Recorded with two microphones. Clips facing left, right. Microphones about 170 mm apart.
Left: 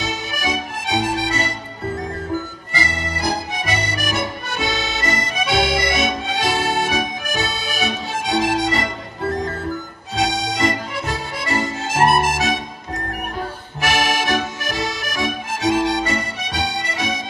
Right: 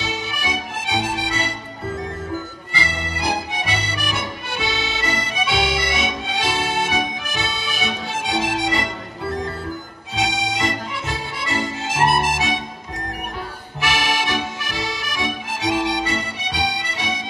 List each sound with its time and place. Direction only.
0.0 s music: 40° left (ahead or behind)
2.7 s music: 40° left (ahead or behind)
10.1 s music: 40° left (ahead or behind)
13.7 s accordion: 45° left (ahead or behind)